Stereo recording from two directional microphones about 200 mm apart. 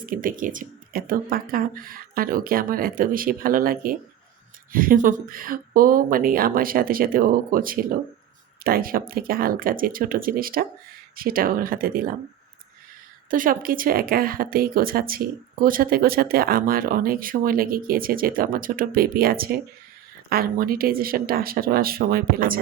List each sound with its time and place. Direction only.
0.0 s speech: 45° right (ahead or behind)
13.3 s speech: 45° right (ahead or behind)